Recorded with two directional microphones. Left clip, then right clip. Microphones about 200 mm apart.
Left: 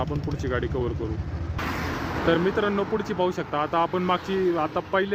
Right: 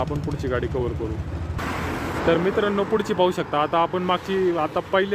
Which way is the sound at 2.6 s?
Centre (ahead or behind).